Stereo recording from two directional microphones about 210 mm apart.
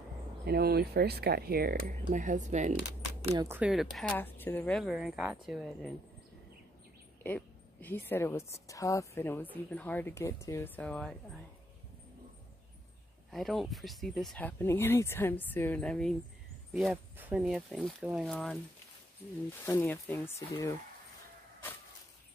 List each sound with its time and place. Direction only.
0.5 s speech: 50° right (ahead or behind)
3.3 s speech: 10° right (ahead or behind)
7.2 s a woman's voice: 10° left (ahead or behind)
13.3 s speech: centre (ahead or behind)
19.6 s a woman's voice: 10° left (ahead or behind)